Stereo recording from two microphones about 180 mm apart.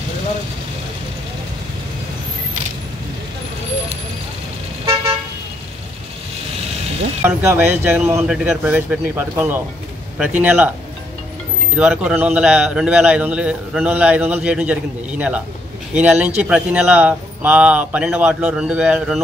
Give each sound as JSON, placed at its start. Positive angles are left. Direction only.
{"t": 7.2, "sound": "a man's voice", "side_deg": -10}
{"t": 11.7, "sound": "a man's voice", "side_deg": -5}